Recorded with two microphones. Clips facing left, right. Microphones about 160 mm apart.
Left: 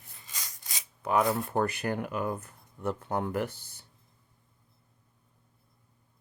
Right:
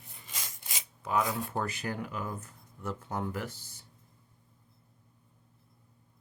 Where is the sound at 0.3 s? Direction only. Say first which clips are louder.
Right 1 dB; 25° right (ahead or behind).